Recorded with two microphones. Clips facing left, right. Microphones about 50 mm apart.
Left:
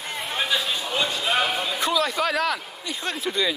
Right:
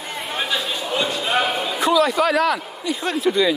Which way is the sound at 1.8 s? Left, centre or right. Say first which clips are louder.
Right 8 dB; right.